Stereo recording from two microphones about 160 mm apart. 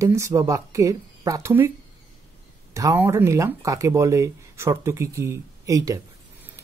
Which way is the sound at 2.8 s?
15° right (ahead or behind).